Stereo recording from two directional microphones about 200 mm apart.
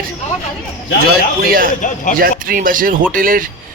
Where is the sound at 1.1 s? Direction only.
45° right (ahead or behind).